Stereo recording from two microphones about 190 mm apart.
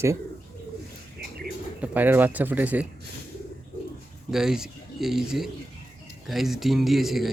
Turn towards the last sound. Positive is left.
turn(degrees=0)  # may be behind; listen again after turning